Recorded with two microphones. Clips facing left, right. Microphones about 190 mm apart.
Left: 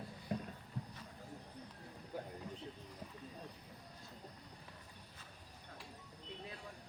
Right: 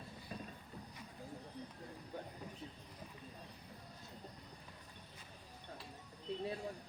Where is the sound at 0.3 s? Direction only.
65° left (ahead or behind).